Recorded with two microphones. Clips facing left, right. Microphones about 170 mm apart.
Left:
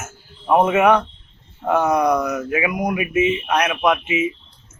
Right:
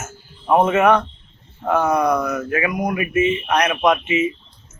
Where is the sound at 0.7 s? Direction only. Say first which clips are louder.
Even; 15° left (ahead or behind).